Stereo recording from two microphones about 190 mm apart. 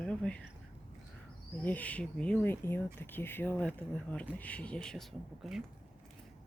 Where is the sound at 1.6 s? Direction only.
10° left (ahead or behind).